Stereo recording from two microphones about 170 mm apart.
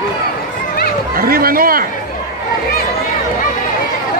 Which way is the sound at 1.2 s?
60° right (ahead or behind).